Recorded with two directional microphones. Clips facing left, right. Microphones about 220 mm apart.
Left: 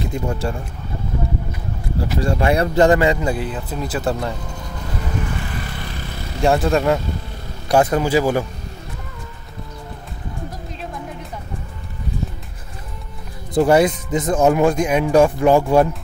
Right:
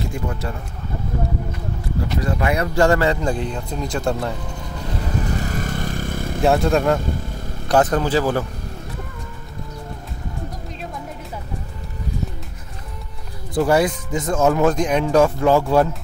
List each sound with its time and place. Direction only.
0.0 s a man's voice: 30° left (ahead or behind)
2.1 s speech: 30° left (ahead or behind); by 4.4 s centre (ahead or behind)
5.4 s vehicle: 45° right (ahead or behind)
6.4 s speech: centre (ahead or behind)
13.6 s speech: 20° left (ahead or behind)